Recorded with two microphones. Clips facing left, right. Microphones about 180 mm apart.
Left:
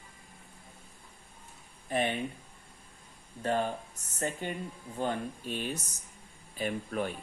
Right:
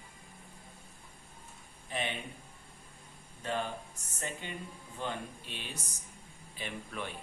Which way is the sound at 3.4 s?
45° left (ahead or behind).